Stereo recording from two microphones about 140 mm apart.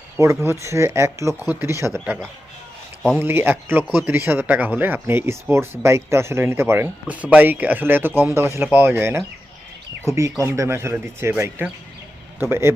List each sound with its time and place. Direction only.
0.4 s speech: 20° right (ahead or behind)
3.2 s speech: 15° right (ahead or behind)